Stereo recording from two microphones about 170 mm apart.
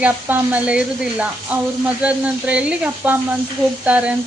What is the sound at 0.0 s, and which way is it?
A woman's voice, 10° right (ahead or behind).